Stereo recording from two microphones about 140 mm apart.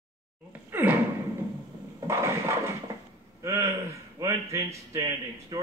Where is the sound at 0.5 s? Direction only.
15° right (ahead or behind).